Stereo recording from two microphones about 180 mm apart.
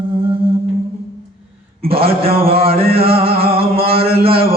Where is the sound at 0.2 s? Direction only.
30° right (ahead or behind).